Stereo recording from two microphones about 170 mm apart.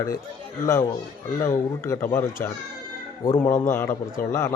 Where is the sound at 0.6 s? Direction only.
15° left (ahead or behind).